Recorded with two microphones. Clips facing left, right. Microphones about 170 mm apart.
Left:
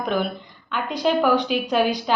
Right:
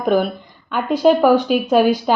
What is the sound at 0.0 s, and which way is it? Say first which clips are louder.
A woman's voice: right 7 dB; 45° right (ahead or behind).